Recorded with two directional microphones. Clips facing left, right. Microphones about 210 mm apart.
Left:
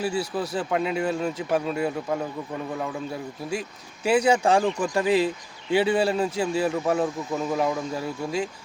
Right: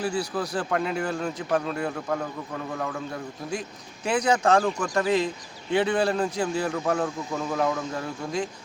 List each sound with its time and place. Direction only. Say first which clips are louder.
0.2 s speech: left 1 dB; 25° left (ahead or behind)
0.6 s speech: left 3 dB; 5° left (ahead or behind)